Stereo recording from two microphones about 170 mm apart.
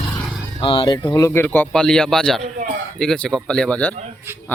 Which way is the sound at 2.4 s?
45° right (ahead or behind).